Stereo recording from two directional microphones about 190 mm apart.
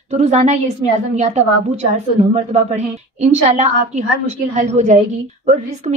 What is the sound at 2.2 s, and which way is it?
A woman's voice, 35° right (ahead or behind).